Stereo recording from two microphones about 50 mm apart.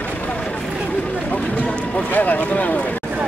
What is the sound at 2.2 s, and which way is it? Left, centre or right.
Speech, left.